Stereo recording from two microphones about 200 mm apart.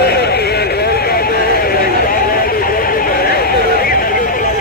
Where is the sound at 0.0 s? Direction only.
55° left (ahead or behind).